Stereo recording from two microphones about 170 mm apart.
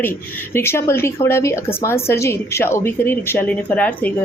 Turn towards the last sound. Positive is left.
turn(degrees=10)  # may be behind; listen again after turning